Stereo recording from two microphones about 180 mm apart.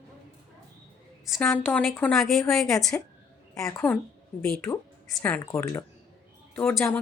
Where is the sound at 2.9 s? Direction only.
15° left (ahead or behind).